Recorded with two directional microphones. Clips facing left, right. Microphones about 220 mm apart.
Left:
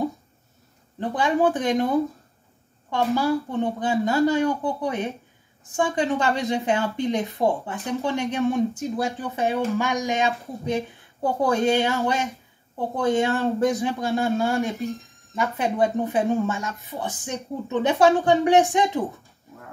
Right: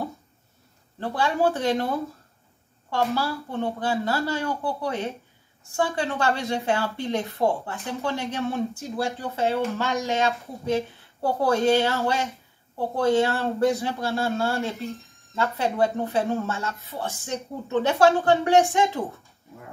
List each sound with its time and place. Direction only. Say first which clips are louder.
0.9 s a woman's voice: left 3 dB; 15° left (ahead or behind)